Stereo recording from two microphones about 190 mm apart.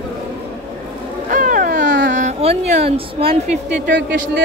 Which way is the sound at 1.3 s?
45° right (ahead or behind).